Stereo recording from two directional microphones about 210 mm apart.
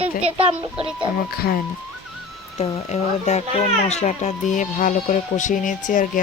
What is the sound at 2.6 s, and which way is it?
Speech, 30° left (ahead or behind).